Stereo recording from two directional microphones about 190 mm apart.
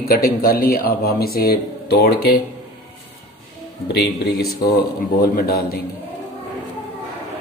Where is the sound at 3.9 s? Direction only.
60° left (ahead or behind).